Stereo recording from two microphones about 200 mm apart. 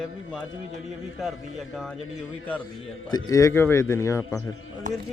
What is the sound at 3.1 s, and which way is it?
A man's voice, 15° left (ahead or behind).